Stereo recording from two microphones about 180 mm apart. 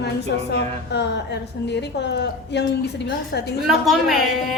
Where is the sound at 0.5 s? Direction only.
70° left (ahead or behind).